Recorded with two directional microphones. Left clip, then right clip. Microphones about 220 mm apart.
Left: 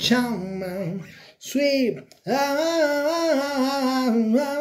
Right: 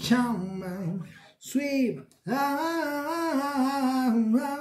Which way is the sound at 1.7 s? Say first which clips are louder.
Left 6 dB; 20° right (ahead or behind).